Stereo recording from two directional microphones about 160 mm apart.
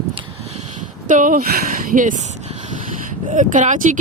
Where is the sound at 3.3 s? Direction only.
50° right (ahead or behind).